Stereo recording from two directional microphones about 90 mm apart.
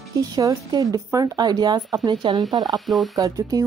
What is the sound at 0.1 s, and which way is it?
A woman's voice, 40° right (ahead or behind).